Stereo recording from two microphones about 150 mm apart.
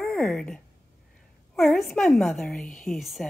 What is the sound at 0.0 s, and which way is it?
A woman's voice, centre (ahead or behind).